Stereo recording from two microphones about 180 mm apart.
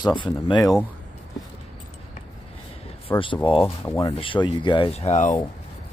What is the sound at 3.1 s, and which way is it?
Speech, 15° left (ahead or behind).